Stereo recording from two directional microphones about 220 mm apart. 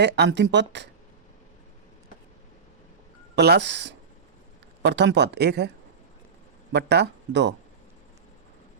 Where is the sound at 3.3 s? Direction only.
50° right (ahead or behind).